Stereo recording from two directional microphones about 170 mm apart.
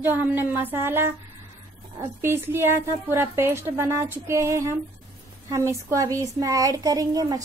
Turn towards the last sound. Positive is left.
turn(degrees=-20)  # may be behind; listen again after turning